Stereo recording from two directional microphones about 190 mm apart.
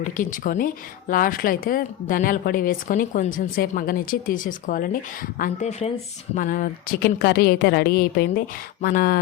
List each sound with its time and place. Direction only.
0.0 s speech: 45° left (ahead or behind)